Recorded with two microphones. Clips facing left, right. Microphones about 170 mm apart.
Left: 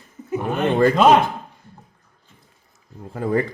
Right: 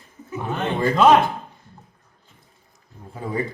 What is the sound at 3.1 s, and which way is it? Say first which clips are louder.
Speech: left 7 dB; 65° left (ahead or behind).